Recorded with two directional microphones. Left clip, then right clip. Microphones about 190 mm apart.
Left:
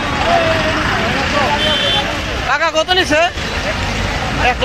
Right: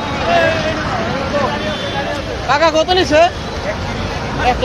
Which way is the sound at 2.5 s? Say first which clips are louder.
Right 2 dB; 15° left (ahead or behind).